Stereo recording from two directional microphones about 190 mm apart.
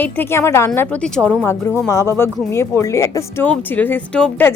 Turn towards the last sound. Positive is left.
turn(degrees=5)  # may be behind; listen again after turning